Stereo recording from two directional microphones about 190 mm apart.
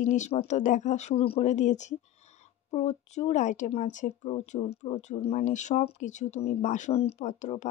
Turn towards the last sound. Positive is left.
turn(degrees=40)  # may be behind; listen again after turning